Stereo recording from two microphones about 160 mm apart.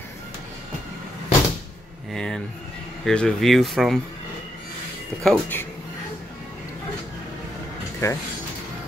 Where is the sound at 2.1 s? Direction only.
5° left (ahead or behind).